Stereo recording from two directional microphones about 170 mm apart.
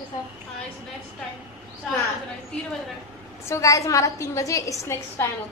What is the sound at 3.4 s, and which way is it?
A woman's voice, 15° left (ahead or behind).